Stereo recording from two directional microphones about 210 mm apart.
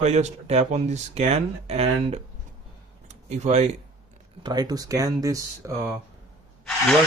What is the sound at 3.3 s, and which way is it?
Speech, 30° right (ahead or behind).